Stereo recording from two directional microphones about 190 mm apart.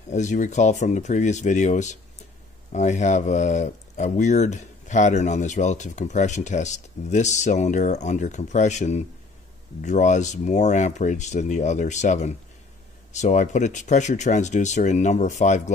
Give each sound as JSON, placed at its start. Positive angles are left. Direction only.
{"t": 0.1, "sound": "speech", "side_deg": 40}